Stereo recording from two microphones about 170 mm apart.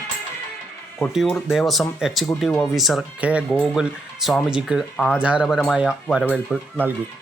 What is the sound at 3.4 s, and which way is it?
Speech, 5° left (ahead or behind).